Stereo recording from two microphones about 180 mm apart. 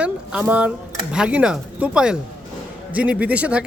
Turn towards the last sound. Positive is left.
turn(degrees=-5)  # may be behind; listen again after turning